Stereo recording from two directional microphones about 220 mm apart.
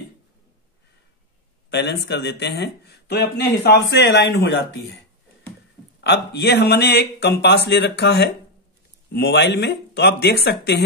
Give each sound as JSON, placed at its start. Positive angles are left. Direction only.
{"t": 1.7, "sound": "speech", "side_deg": 50}
{"t": 5.9, "sound": "speech", "side_deg": 50}